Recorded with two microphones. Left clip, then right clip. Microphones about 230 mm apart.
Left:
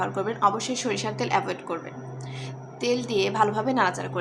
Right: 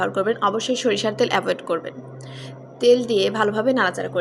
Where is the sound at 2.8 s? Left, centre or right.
Centre.